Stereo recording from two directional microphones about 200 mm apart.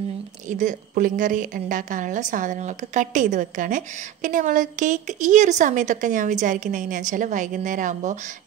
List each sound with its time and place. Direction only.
0.5 s a woman's voice: 40° right (ahead or behind)